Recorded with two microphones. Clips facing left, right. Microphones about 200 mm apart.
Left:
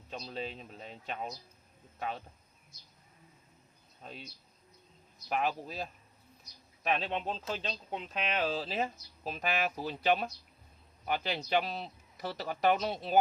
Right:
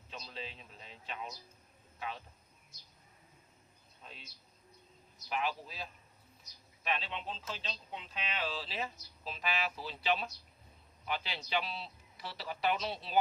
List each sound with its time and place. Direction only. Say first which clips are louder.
0.1 s speech: left 7 dB; 45° left (ahead or behind)
4.0 s speech: left 7 dB; 45° left (ahead or behind)
5.3 s speech: left 4 dB; 45° left (ahead or behind)